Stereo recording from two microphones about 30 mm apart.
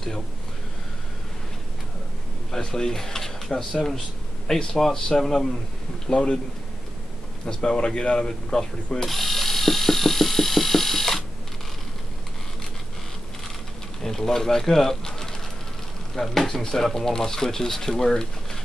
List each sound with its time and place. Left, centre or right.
2.5 s speech: centre
6.1 s speech: left
7.4 s speech: left
9.0 s a sound: centre
14.0 s speech: centre